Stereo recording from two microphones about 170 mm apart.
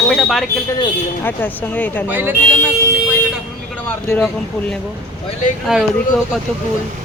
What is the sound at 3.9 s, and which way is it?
Speech, 10° left (ahead or behind).